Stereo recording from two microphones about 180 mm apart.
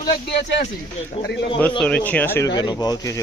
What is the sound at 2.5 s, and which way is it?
Speech, 20° left (ahead or behind).